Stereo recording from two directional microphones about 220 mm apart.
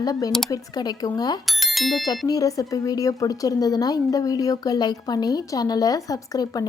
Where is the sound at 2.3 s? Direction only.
15° left (ahead or behind).